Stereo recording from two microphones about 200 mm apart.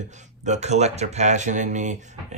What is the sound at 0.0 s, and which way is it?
Speech, 35° right (ahead or behind).